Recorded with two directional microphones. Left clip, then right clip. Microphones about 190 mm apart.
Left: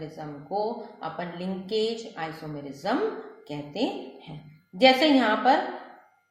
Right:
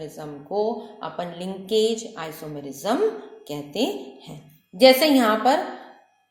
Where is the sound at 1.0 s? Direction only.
35° right (ahead or behind).